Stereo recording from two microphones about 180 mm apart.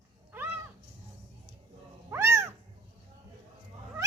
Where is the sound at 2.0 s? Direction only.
15° right (ahead or behind).